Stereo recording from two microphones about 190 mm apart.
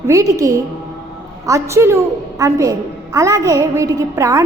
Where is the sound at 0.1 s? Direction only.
15° right (ahead or behind).